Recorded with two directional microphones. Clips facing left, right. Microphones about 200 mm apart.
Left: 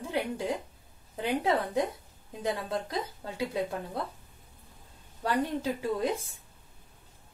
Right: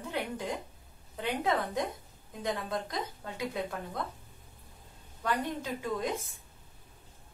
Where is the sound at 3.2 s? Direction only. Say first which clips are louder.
Left 3 dB; 30° left (ahead or behind).